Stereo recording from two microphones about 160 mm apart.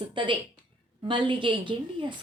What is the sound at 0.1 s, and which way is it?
A woman's voice, 30° right (ahead or behind).